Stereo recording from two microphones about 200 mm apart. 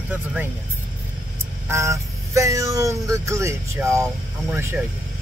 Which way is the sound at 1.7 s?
15° right (ahead or behind).